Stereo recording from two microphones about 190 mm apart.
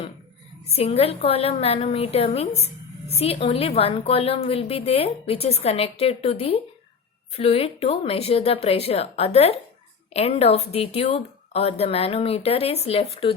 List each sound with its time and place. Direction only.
0.7 s a woman's voice: 30° left (ahead or behind)